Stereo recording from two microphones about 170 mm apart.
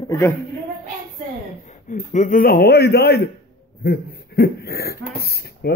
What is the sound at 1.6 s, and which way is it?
A man's voice, 45° left (ahead or behind).